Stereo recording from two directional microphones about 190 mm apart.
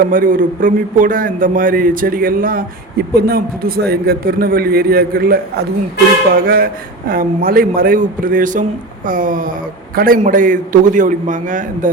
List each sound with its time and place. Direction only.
0.0 s a man's voice: 45° right (ahead or behind)